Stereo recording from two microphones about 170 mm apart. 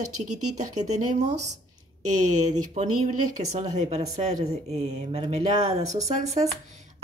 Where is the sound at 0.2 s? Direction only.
45° right (ahead or behind).